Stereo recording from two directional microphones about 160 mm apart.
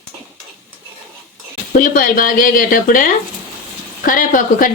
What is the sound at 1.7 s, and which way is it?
Speech, 60° left (ahead or behind).